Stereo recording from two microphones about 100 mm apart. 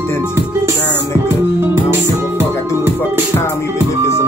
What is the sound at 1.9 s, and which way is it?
Music, 20° right (ahead or behind).